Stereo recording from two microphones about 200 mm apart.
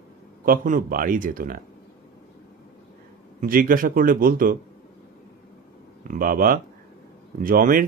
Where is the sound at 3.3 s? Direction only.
45° right (ahead or behind).